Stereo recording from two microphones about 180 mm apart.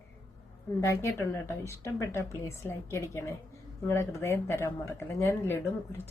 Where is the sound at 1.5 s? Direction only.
15° left (ahead or behind).